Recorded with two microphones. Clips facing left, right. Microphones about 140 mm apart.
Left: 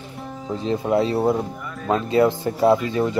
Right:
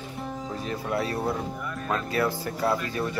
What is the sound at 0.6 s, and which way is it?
Speech, 25° left (ahead or behind).